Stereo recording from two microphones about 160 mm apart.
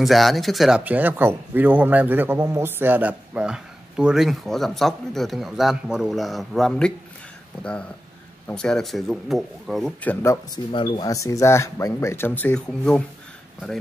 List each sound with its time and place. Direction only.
0.0 s speech: centre (ahead or behind)
8.5 s speech: 5° left (ahead or behind)
10.2 s speech: 20° left (ahead or behind)